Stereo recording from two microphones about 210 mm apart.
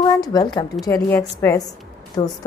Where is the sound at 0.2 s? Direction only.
20° left (ahead or behind).